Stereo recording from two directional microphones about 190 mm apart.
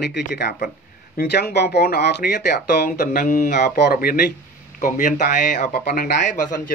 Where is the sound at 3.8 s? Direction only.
50° left (ahead or behind).